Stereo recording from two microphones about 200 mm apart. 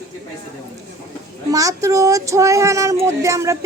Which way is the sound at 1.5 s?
15° right (ahead or behind).